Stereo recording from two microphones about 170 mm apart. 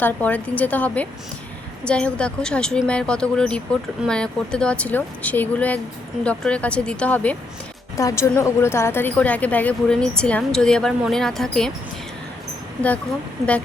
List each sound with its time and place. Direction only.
0.0 s speech: 10° left (ahead or behind)